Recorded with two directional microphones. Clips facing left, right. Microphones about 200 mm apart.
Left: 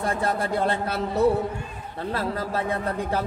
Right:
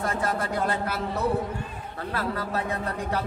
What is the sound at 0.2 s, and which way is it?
A man's voice, 30° left (ahead or behind).